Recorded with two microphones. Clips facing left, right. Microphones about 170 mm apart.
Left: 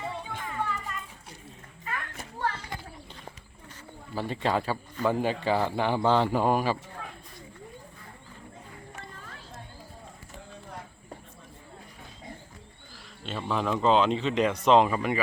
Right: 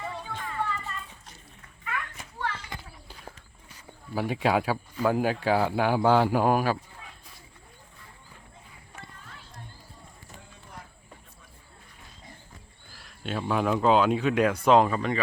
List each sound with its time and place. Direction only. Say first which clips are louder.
0.0 s music: even; 20° left (ahead or behind)
1.8 s children playing: right 1 dB; 40° left (ahead or behind)
4.1 s speech: right 3 dB; 10° right (ahead or behind)
13.2 s speech: right 3 dB; 5° right (ahead or behind)
14.8 s speech: even; 10° left (ahead or behind)